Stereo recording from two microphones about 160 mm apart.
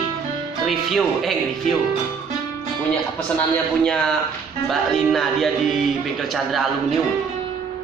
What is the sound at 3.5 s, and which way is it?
Speech, 5° left (ahead or behind).